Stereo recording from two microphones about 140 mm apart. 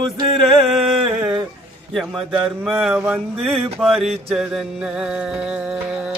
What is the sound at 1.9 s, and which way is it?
Mantra, centre (ahead or behind).